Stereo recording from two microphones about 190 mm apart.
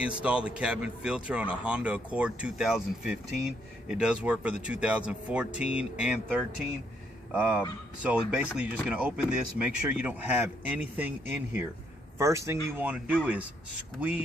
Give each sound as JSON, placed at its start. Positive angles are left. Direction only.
{"t": 0.0, "sound": "speech", "side_deg": -5}
{"t": 12.2, "sound": "speech", "side_deg": -15}